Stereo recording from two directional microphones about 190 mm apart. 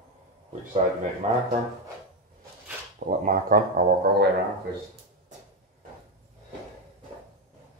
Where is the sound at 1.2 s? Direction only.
35° right (ahead or behind).